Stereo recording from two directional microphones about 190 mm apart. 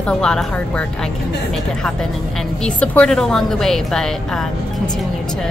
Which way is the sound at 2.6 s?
5° left (ahead or behind).